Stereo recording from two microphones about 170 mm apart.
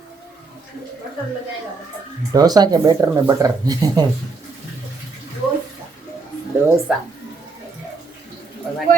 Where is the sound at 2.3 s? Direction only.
20° right (ahead or behind).